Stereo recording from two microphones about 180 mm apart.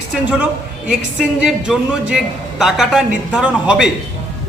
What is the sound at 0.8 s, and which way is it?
A woman's voice, 5° right (ahead or behind).